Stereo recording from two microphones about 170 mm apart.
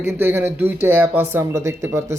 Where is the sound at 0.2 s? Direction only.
10° right (ahead or behind).